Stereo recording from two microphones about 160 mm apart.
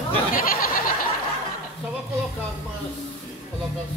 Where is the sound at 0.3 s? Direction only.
60° left (ahead or behind).